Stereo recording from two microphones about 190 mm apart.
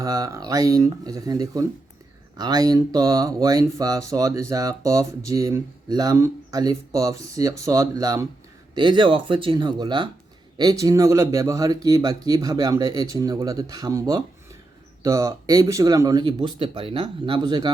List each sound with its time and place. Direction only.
0.0 s speech: 20° right (ahead or behind)